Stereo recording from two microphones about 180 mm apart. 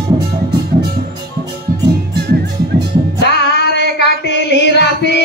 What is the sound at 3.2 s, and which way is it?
Music, 65° left (ahead or behind).